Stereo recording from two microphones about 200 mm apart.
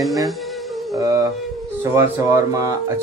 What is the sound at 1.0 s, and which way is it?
Speech, 20° right (ahead or behind).